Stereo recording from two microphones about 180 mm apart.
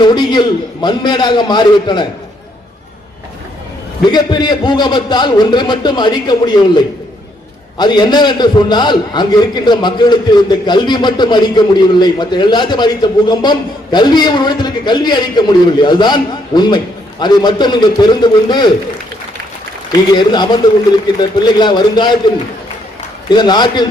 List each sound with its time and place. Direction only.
0.0 s a man's voice: 25° left (ahead or behind)
4.0 s a man's voice: 25° left (ahead or behind)
20.1 s a man's voice: 25° left (ahead or behind)
23.3 s a man's voice: 25° left (ahead or behind)